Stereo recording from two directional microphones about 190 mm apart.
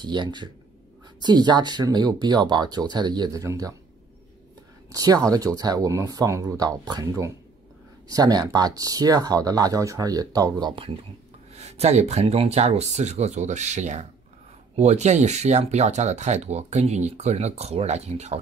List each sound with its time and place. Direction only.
0.0 s speech: 25° right (ahead or behind)
4.9 s speech: 20° right (ahead or behind)
11.5 s speech: 35° right (ahead or behind)